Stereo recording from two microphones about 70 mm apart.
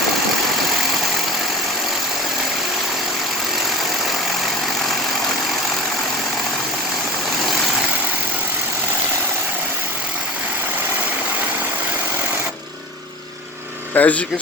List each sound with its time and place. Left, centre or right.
13.9 s speech: left